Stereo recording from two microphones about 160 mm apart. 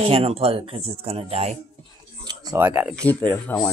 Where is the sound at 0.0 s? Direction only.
35° right (ahead or behind).